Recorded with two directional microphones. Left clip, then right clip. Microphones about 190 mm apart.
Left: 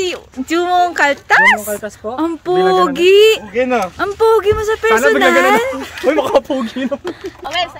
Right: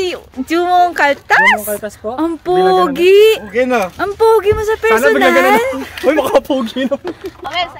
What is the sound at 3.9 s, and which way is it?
A woman's voice, centre (ahead or behind).